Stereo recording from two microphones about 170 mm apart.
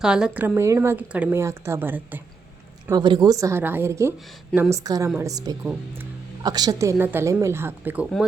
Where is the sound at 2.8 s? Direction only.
25° right (ahead or behind).